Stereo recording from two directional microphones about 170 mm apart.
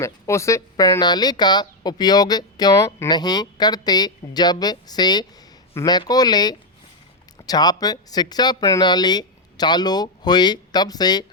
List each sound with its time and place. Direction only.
0.0 s speech: 15° left (ahead or behind)